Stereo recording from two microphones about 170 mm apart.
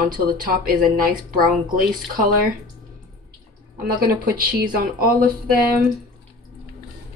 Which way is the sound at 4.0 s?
65° right (ahead or behind).